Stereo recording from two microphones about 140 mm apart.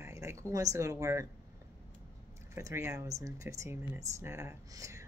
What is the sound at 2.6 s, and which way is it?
A woman's voice, 20° right (ahead or behind).